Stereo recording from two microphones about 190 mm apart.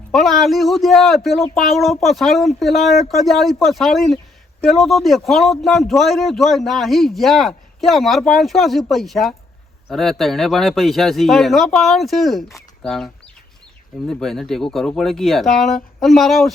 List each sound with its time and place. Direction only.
0.1 s a man's voice: centre (ahead or behind)
14.1 s a man's voice: centre (ahead or behind)